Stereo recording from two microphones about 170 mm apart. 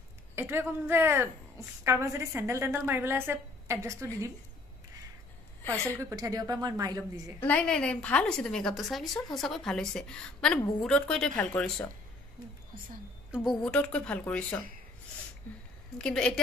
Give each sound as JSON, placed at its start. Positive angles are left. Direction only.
{"t": 0.4, "sound": "a woman's voice", "side_deg": -15}
{"t": 5.9, "sound": "a woman's voice", "side_deg": -20}
{"t": 7.3, "sound": "a woman's voice", "side_deg": 10}
{"t": 13.3, "sound": "a woman's voice", "side_deg": 0}
{"t": 16.0, "sound": "a woman's voice", "side_deg": 5}